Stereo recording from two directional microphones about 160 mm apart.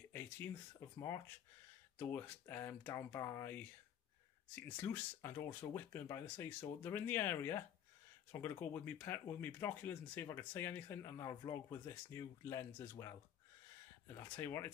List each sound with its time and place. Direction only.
0.1 s speech: 15° left (ahead or behind)
4.6 s speech: 15° left (ahead or behind)